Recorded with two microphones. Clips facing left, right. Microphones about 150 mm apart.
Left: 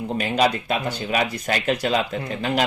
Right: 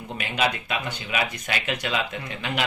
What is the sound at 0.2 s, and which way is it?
Speech, 35° left (ahead or behind).